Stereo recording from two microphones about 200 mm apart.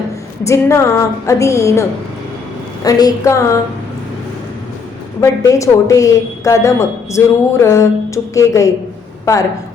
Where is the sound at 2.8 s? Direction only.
15° left (ahead or behind).